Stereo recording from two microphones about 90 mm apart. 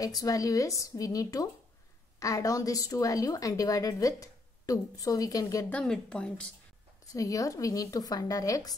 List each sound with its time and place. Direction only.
0.0 s a woman's voice: 40° left (ahead or behind)
5.7 s speech: 10° left (ahead or behind)
7.1 s a woman's voice: 40° left (ahead or behind)